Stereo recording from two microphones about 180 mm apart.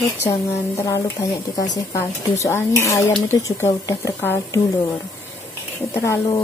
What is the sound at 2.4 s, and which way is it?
Speech, 15° left (ahead or behind).